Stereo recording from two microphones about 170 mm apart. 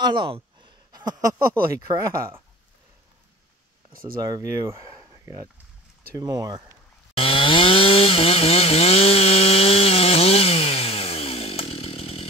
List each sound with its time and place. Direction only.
0.0 s speech: 30° right (ahead or behind)
4.2 s speech: 20° right (ahead or behind)
7.2 s chainsaw: 30° left (ahead or behind)